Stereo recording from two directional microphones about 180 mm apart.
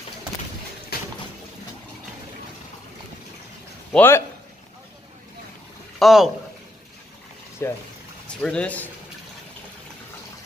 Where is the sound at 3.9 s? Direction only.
10° left (ahead or behind).